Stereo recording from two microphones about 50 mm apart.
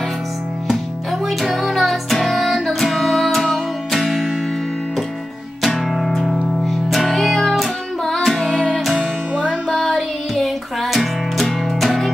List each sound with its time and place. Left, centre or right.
1.2 s music: centre
5.9 s music: centre
9.4 s music: left
9.9 s music: centre